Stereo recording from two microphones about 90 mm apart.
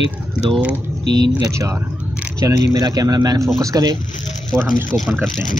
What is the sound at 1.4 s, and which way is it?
Speech, 35° right (ahead or behind).